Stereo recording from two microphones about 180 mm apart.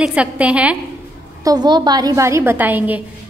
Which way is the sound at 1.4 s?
25° right (ahead or behind).